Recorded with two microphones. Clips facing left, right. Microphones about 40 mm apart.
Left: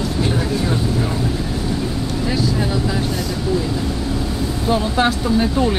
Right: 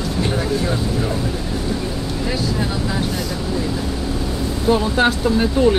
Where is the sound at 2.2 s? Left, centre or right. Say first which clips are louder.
Left 2 dB; centre.